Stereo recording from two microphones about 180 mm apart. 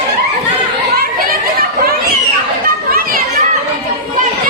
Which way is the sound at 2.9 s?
50° right (ahead or behind).